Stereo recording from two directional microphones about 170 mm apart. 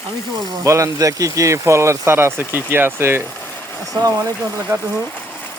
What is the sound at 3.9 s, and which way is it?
Speech, 20° right (ahead or behind).